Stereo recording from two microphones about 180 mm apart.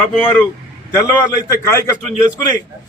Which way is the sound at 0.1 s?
5° left (ahead or behind).